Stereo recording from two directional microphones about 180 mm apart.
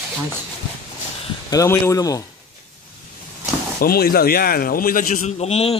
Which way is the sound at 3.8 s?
55° left (ahead or behind).